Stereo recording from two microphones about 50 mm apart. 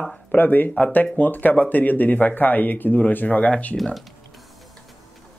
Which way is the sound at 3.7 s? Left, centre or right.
Centre.